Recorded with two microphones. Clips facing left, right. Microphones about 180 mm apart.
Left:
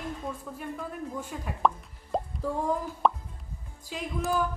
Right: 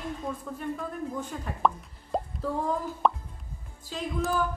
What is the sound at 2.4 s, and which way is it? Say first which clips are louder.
Speech: right 1 dB; 10° left (ahead or behind).